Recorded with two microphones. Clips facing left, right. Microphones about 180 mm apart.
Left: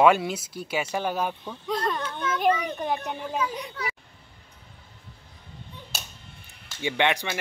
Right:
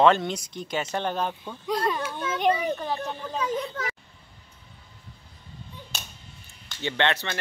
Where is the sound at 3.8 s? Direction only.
45° right (ahead or behind).